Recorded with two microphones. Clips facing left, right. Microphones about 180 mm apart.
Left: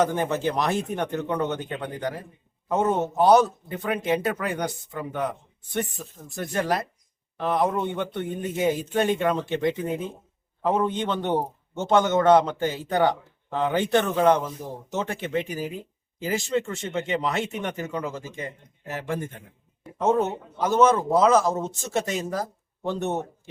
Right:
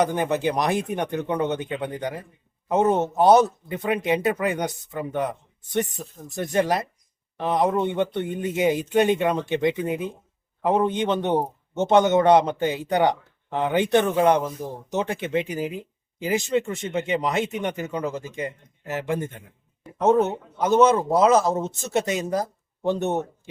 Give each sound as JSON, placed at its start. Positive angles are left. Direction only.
{"t": 0.0, "sound": "a man's voice", "side_deg": -15}
{"t": 20.6, "sound": "speech", "side_deg": -20}